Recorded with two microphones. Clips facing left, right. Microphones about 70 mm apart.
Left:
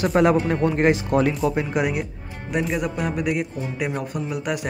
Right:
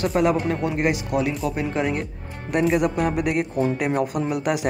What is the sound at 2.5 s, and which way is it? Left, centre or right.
A man's voice, centre.